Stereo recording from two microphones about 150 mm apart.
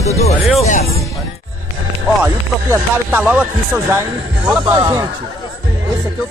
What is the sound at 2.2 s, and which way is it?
Speech, 15° right (ahead or behind).